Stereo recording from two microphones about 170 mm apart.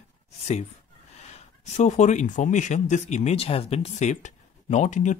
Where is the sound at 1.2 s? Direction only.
40° left (ahead or behind).